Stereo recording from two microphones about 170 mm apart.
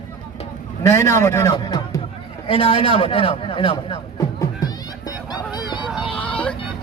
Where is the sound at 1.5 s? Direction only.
25° left (ahead or behind).